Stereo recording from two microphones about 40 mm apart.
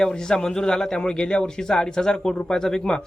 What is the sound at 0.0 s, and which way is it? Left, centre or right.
A man's voice, centre.